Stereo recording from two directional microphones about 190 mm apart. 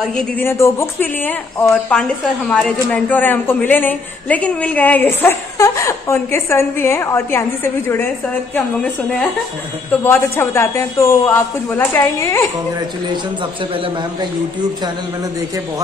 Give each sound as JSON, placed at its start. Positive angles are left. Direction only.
{"t": 0.0, "sound": "speech", "side_deg": 5}
{"t": 13.1, "sound": "a man's voice", "side_deg": -25}